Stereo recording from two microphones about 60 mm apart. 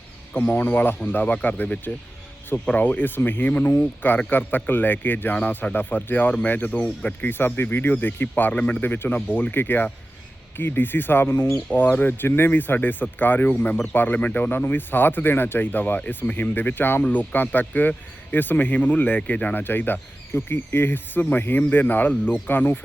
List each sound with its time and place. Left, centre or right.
0.3 s speech: left